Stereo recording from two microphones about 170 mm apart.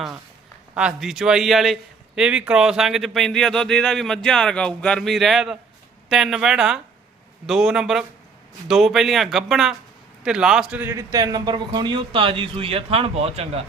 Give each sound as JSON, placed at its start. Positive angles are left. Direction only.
{"t": 0.7, "sound": "a man's voice", "side_deg": -5}